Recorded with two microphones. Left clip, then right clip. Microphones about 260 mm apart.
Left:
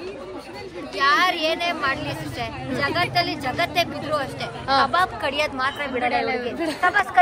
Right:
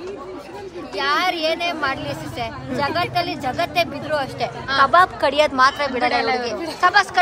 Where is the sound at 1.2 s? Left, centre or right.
Right.